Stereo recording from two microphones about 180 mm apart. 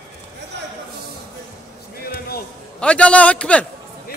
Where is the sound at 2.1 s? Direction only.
60° left (ahead or behind).